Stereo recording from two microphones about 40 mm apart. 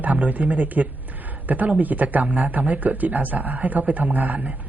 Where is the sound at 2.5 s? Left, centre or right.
Right.